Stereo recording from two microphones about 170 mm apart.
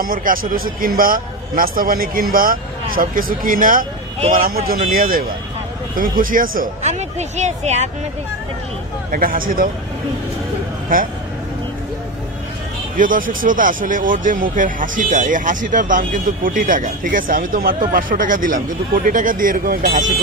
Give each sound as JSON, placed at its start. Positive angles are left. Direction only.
{"t": 0.0, "sound": "a man's voice", "side_deg": -55}
{"t": 9.1, "sound": "a man's voice", "side_deg": -55}
{"t": 10.9, "sound": "a man's voice", "side_deg": -55}
{"t": 12.9, "sound": "speech", "side_deg": -55}